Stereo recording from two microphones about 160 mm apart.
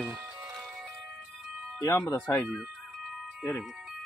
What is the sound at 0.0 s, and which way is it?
Music, 5° right (ahead or behind).